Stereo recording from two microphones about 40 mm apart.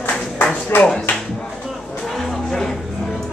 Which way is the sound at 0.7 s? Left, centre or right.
Left.